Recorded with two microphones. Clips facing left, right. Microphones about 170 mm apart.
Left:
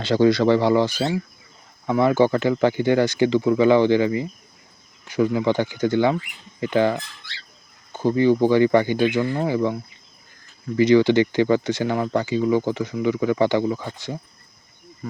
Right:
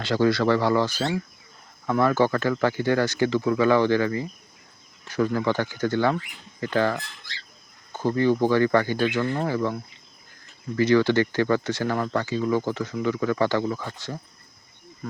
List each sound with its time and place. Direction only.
0.0 s speech: 20° left (ahead or behind)
10.8 s speech: 15° left (ahead or behind)